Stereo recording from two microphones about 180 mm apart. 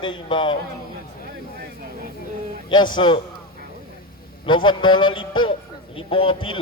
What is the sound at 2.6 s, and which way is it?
Speech, 25° left (ahead or behind).